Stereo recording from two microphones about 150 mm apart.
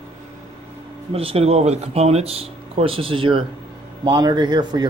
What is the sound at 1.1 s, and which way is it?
Speech, 40° right (ahead or behind).